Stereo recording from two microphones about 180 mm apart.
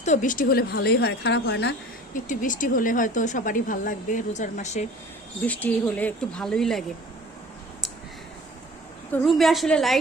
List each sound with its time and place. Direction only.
0.0 s speech: 45° left (ahead or behind); by 1.7 s 75° left (ahead or behind)
2.1 s a woman's voice: 45° left (ahead or behind)
5.5 s speech: 10° left (ahead or behind)
9.2 s a woman's voice: centre (ahead or behind)